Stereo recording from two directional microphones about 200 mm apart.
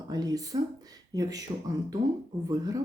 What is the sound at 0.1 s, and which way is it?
Speech, 20° right (ahead or behind).